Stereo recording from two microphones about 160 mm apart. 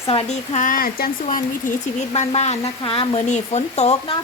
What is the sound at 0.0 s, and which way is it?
Speech, 35° left (ahead or behind).